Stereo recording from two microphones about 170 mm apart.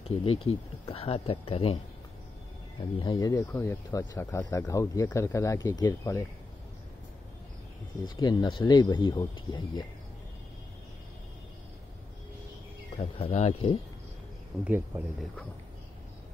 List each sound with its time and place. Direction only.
0.0 s speech: 35° left (ahead or behind)
3.0 s speech: 25° left (ahead or behind)
8.2 s speech: 25° left (ahead or behind)
12.9 s speech: 40° left (ahead or behind)
14.6 s speech: 10° right (ahead or behind)